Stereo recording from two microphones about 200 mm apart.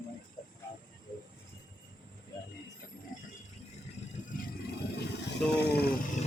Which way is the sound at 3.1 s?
40° left (ahead or behind).